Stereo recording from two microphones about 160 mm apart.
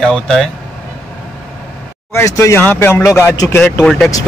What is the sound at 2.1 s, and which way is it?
Speech, 15° left (ahead or behind).